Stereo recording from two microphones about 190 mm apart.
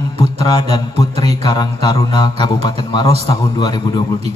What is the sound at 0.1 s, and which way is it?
A man's voice, 20° left (ahead or behind).